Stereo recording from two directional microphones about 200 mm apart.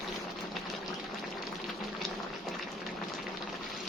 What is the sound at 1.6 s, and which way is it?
Boiling, centre (ahead or behind).